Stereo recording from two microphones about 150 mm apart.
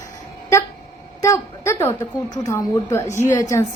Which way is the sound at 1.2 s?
20° left (ahead or behind).